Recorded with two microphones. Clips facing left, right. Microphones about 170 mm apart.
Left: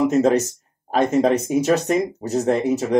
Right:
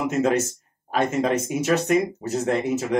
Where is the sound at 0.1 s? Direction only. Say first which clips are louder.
Left 4 dB; 35° left (ahead or behind).